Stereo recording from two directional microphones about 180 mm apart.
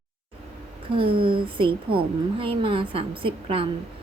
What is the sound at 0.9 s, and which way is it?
A woman's voice, 30° right (ahead or behind).